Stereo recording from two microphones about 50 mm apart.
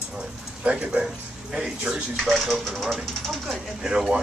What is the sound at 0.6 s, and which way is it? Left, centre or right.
Speech, right.